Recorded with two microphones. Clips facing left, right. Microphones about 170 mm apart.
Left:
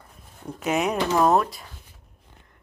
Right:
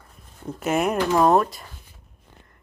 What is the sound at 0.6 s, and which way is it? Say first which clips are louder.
Speech: right 2 dB; 5° right (ahead or behind).